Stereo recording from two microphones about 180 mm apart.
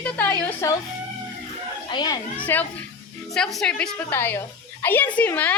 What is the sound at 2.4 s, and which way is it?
A woman's voice, 10° left (ahead or behind).